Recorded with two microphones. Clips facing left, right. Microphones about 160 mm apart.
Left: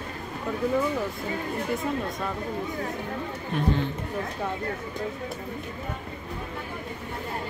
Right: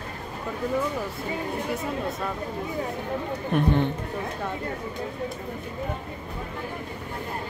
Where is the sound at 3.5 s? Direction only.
60° right (ahead or behind).